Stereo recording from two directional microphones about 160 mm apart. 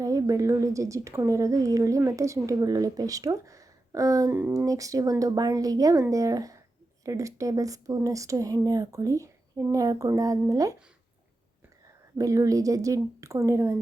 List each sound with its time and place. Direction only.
0.0 s a woman's voice: 20° right (ahead or behind)
12.1 s a woman's voice: 20° right (ahead or behind)